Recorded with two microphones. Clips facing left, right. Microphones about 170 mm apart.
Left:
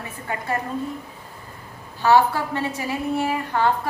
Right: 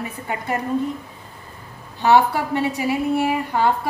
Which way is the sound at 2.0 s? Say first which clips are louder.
Right 1 dB; 15° right (ahead or behind).